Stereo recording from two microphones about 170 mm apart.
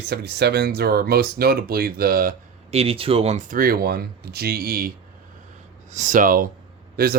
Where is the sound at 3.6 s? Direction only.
60° right (ahead or behind).